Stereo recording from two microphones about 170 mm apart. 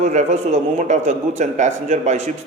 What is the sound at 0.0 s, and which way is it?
A man's voice, 45° right (ahead or behind).